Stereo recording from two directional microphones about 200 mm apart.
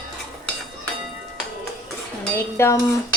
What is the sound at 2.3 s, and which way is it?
Dishes, 10° left (ahead or behind).